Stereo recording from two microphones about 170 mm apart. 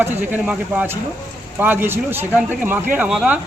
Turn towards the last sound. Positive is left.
turn(degrees=-5)  # may be behind; listen again after turning